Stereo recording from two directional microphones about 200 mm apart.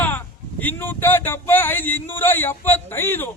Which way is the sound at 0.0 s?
10° left (ahead or behind).